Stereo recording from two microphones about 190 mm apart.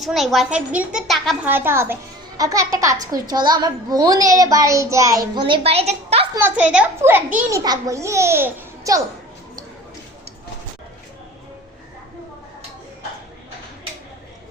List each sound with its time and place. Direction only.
0.0 s a woman's voice: centre (ahead or behind)
1.5 s a child's voice: 10° right (ahead or behind); by 6.2 s 35° right (ahead or behind)
6.3 s a child's voice: 10° right (ahead or behind)